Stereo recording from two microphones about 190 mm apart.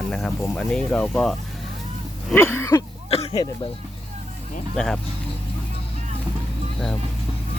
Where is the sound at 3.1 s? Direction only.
30° left (ahead or behind).